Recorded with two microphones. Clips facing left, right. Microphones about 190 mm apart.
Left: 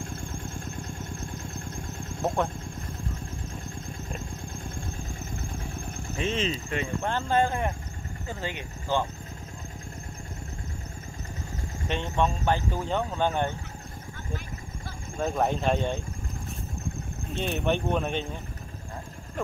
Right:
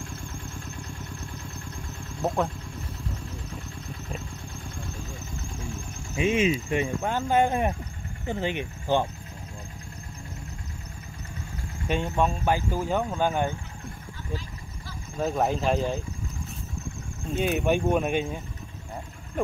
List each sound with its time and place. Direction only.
0.0 s vehicle: 55° left (ahead or behind)
2.2 s speech: 5° right (ahead or behind)
6.1 s speech: 10° right (ahead or behind)
12.2 s speech: 10° right (ahead or behind)
15.1 s speech: 5° right (ahead or behind)
17.4 s speech: 10° right (ahead or behind)